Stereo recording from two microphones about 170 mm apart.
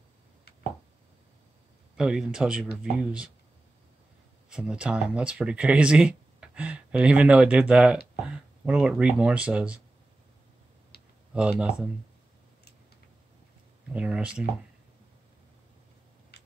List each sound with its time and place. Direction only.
2.0 s speech: 5° right (ahead or behind)
4.5 s speech: 5° right (ahead or behind)
10.9 s computer keyboard: 65° left (ahead or behind)
11.3 s speech: 5° right (ahead or behind)
13.9 s speech: 5° right (ahead or behind)